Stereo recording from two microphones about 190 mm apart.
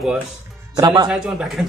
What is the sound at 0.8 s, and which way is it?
Speech, 20° right (ahead or behind).